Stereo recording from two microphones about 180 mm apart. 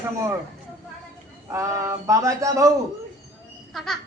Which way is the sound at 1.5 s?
15° right (ahead or behind).